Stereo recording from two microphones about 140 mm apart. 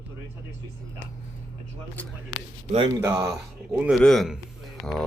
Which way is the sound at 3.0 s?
20° right (ahead or behind).